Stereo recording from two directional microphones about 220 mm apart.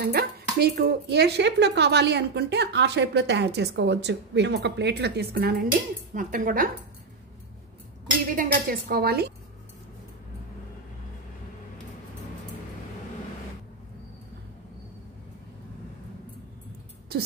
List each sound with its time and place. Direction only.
0.0 s speech: 45° right (ahead or behind)
8.3 s speech: 40° right (ahead or behind)